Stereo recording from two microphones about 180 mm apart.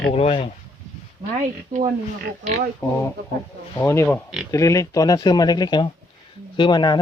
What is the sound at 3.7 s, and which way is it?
Speech, 15° left (ahead or behind).